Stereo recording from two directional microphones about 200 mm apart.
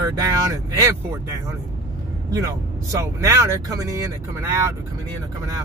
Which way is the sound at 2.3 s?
15° right (ahead or behind).